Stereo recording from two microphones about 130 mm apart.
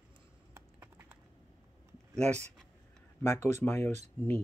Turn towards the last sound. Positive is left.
turn(degrees=15)  # may be behind; listen again after turning